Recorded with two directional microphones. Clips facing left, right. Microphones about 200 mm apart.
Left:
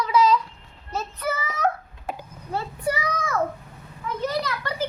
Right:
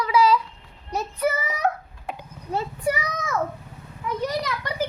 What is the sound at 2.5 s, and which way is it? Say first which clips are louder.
Speech: right 2 dB; 15° right (ahead or behind).